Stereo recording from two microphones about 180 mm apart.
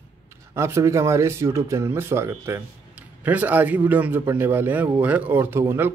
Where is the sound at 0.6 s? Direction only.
15° right (ahead or behind).